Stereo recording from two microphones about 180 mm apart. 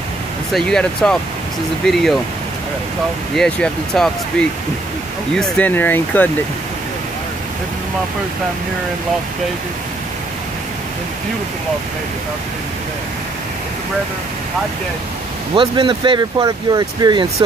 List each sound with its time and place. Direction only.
0.5 s speech: centre (ahead or behind)
3.3 s speech: 5° left (ahead or behind)
15.5 s speech: 30° right (ahead or behind)